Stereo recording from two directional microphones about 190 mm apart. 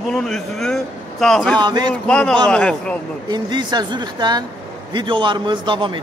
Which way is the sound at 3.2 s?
20° right (ahead or behind).